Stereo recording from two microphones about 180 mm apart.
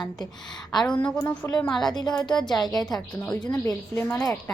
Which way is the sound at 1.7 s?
Centre (ahead or behind).